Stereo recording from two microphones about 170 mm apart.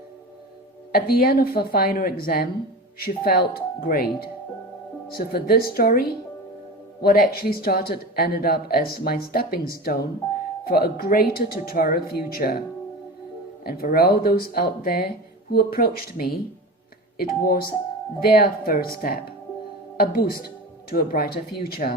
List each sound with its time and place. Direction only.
0.9 s speech: 65° left (ahead or behind)
5.1 s speech: 65° left (ahead or behind)
13.7 s speech: 65° left (ahead or behind)